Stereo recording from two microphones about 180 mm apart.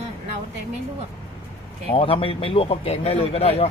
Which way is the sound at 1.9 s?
30° left (ahead or behind).